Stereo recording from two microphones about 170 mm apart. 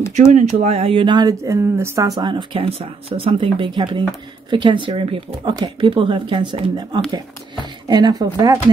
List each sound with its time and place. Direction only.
0.3 s speech: 40° right (ahead or behind); by 8.5 s 25° right (ahead or behind)